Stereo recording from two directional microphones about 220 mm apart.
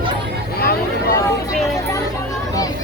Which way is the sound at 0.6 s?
40° left (ahead or behind).